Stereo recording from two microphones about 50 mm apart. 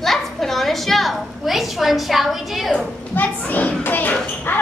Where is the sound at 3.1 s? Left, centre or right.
Left.